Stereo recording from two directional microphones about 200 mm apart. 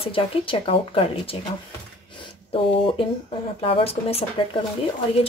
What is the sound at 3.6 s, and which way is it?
Speech, 25° left (ahead or behind).